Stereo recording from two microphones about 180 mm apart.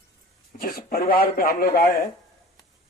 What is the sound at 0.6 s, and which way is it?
Speech, 55° left (ahead or behind).